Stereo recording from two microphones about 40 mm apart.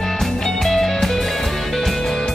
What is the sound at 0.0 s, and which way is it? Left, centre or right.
Music, centre.